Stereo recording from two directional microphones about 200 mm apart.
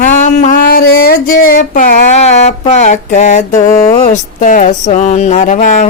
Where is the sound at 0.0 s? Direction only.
40° left (ahead or behind).